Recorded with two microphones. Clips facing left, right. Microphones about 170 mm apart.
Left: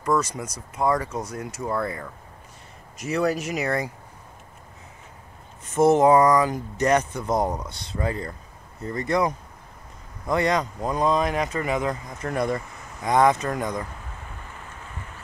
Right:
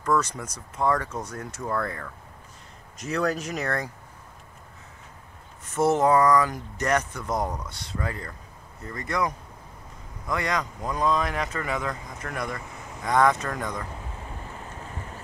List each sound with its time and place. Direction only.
0.0 s speech: 10° left (ahead or behind)
5.8 s speech: 20° left (ahead or behind)